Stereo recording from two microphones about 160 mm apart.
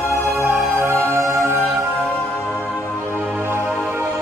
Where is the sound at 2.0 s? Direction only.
Centre (ahead or behind).